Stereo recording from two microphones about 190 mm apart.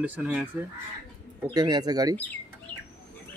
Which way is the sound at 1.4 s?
20° right (ahead or behind).